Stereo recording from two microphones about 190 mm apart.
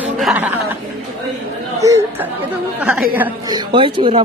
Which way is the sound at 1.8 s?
15° right (ahead or behind).